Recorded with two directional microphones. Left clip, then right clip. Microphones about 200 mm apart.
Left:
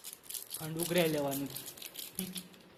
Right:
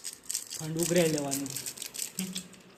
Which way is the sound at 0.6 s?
5° right (ahead or behind).